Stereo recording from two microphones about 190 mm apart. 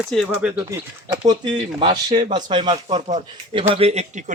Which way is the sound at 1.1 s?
25° right (ahead or behind).